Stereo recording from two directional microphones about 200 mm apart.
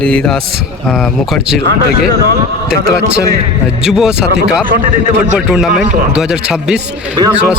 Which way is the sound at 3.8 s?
5° right (ahead or behind).